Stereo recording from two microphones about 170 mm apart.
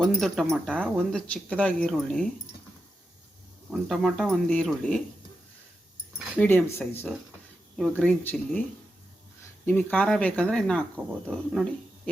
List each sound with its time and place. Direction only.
0.0 s speech: centre (ahead or behind)
3.7 s speech: centre (ahead or behind)
6.4 s speech: 10° left (ahead or behind)
9.6 s speech: 10° left (ahead or behind)